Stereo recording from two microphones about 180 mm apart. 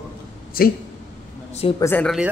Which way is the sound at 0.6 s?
55° left (ahead or behind).